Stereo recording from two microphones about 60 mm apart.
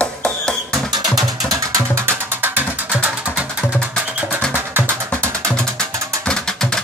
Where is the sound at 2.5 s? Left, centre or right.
Right.